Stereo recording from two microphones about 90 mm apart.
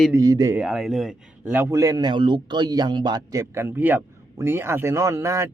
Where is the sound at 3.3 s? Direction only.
30° right (ahead or behind).